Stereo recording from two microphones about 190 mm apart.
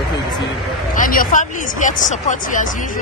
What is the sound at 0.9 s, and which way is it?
Speech, 45° left (ahead or behind).